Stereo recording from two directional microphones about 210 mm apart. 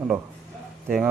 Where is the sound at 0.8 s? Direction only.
Centre (ahead or behind).